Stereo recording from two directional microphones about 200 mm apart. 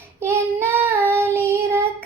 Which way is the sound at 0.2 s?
10° right (ahead or behind).